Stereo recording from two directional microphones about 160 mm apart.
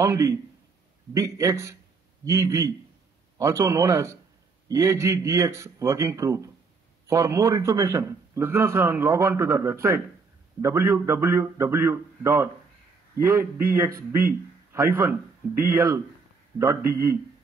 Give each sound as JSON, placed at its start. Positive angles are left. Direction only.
{"t": 0.0, "sound": "a man's voice", "side_deg": -20}